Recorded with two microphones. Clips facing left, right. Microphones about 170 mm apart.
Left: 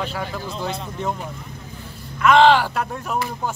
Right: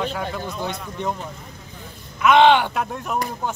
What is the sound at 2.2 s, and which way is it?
Speech, centre (ahead or behind).